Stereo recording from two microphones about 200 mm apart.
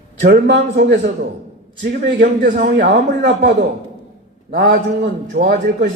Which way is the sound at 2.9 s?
60° right (ahead or behind).